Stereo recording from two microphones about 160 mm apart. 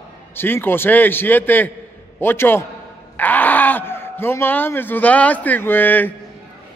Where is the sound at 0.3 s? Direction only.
15° left (ahead or behind).